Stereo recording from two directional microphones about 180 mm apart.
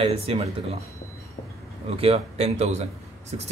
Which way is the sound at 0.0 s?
35° right (ahead or behind).